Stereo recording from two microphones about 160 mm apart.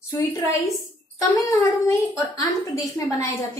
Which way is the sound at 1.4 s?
20° left (ahead or behind).